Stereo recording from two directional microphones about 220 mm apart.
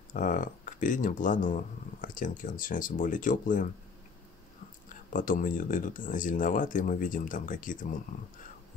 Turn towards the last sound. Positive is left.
turn(degrees=35)  # may be behind; listen again after turning